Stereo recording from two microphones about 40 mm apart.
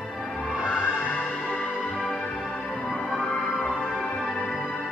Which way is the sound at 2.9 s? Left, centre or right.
Left.